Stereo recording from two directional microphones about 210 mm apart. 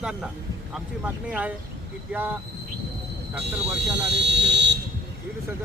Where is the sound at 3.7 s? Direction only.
55° right (ahead or behind).